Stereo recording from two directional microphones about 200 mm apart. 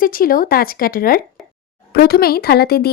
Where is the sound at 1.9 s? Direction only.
50° left (ahead or behind).